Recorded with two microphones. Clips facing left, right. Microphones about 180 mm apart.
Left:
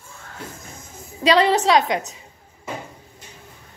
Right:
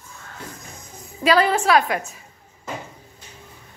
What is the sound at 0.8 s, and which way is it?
A woman's voice, 25° left (ahead or behind).